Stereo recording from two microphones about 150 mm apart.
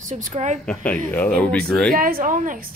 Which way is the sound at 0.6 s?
5° left (ahead or behind).